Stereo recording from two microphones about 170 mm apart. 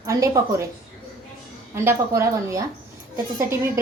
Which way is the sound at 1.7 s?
15° right (ahead or behind).